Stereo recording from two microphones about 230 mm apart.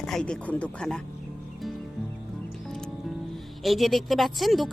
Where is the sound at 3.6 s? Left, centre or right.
Centre.